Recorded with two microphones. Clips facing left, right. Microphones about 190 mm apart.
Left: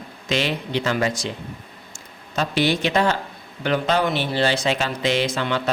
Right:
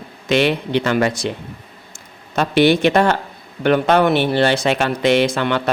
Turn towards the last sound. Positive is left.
turn(degrees=-60)  # may be behind; listen again after turning